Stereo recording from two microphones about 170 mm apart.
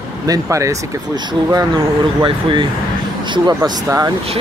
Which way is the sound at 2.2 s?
30° right (ahead or behind).